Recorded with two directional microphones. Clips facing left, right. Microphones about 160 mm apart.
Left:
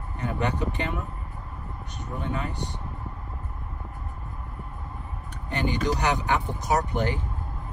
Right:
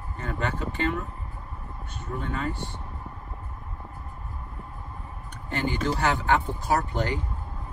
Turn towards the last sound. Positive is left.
turn(degrees=15)  # may be behind; listen again after turning